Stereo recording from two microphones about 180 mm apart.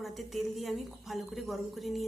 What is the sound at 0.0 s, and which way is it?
A woman's voice, centre (ahead or behind).